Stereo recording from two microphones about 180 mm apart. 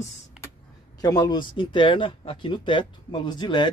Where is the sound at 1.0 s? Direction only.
20° left (ahead or behind).